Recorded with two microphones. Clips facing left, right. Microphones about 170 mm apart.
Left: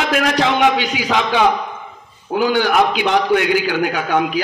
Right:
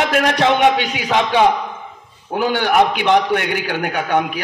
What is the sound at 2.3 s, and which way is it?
A man's voice, 60° right (ahead or behind).